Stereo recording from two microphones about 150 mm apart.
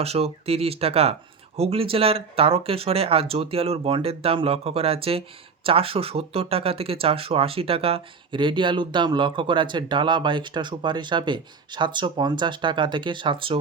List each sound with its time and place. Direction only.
0.0 s speech: 40° right (ahead or behind)